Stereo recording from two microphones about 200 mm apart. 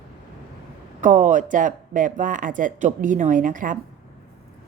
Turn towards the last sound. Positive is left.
turn(degrees=-40)  # may be behind; listen again after turning